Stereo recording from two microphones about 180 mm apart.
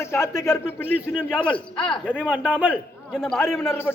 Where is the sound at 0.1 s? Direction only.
15° left (ahead or behind).